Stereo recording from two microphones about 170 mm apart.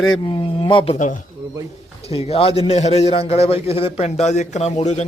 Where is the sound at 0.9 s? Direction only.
45° left (ahead or behind).